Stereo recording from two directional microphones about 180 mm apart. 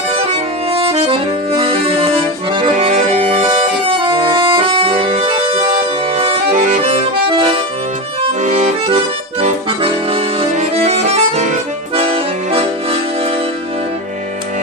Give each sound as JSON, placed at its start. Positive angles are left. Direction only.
{"t": 0.3, "sound": "accordion", "side_deg": -35}